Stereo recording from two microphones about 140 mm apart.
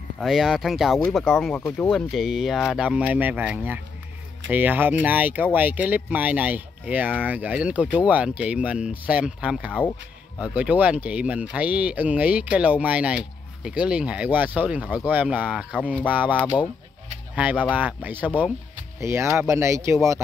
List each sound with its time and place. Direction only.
0.2 s speech: centre (ahead or behind)
17.4 s speech: 10° right (ahead or behind)